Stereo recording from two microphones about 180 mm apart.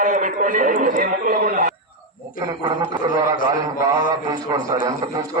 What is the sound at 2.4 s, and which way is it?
A man's voice, 25° right (ahead or behind).